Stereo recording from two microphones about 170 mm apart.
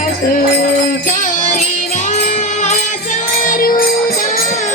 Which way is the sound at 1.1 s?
45° left (ahead or behind).